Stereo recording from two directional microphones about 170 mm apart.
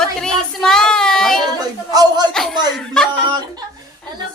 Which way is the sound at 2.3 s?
5° left (ahead or behind).